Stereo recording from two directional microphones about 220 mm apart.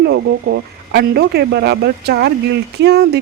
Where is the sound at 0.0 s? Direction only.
50° right (ahead or behind).